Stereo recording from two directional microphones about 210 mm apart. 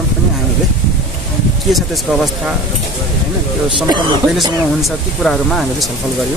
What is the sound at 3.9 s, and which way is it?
Speech, 20° right (ahead or behind).